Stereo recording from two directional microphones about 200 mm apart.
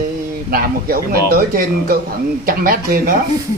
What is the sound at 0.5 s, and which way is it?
Speech, 45° right (ahead or behind).